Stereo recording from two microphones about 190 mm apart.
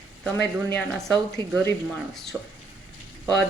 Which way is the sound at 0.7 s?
5° left (ahead or behind).